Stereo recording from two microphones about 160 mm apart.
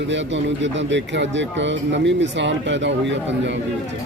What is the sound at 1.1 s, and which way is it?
Speech, 90° right.